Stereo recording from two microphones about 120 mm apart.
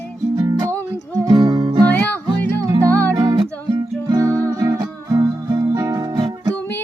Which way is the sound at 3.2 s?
40° right (ahead or behind).